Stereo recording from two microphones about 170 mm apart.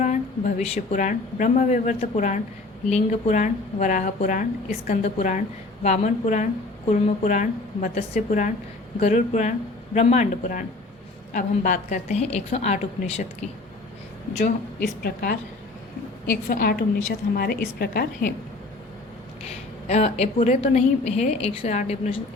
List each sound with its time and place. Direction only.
0.0 s a woman's voice: 45° left (ahead or behind)
14.8 s a woman's voice: 60° left (ahead or behind)
19.9 s a woman's voice: 40° left (ahead or behind)